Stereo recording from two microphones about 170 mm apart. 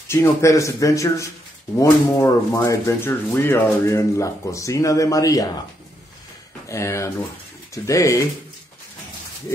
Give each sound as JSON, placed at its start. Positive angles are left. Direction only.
{"t": 0.1, "sound": "speech", "side_deg": 15}
{"t": 6.7, "sound": "speech", "side_deg": 15}